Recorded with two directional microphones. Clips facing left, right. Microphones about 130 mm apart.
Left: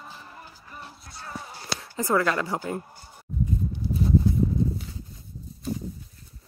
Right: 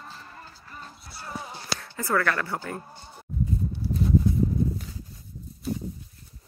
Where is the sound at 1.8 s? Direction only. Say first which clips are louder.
Left 2 dB; 20° left (ahead or behind).